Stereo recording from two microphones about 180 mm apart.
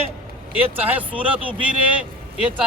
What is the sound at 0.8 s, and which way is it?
Speech, 10° right (ahead or behind).